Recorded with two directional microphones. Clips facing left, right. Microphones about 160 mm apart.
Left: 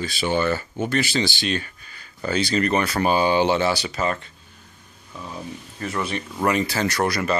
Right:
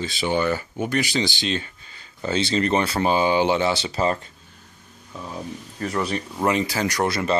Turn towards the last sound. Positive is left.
turn(degrees=-25)  # may be behind; listen again after turning